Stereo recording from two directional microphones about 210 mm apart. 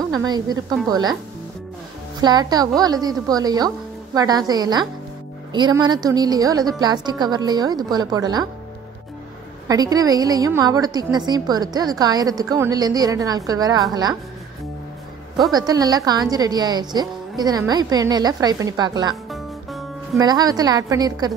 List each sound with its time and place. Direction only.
0.1 s a woman's voice: 20° right (ahead or behind)
2.1 s a woman's voice: 20° right (ahead or behind)
9.7 s a woman's voice: 15° right (ahead or behind)
15.5 s a woman's voice: 20° right (ahead or behind)
19.3 s music: centre (ahead or behind)
20.2 s a woman's voice: 20° right (ahead or behind)